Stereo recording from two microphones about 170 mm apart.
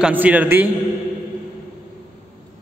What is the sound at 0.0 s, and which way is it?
Speech, 10° right (ahead or behind).